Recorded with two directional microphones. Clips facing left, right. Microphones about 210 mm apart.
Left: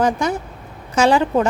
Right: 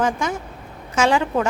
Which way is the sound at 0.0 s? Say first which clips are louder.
Left 3 dB; 35° left (ahead or behind).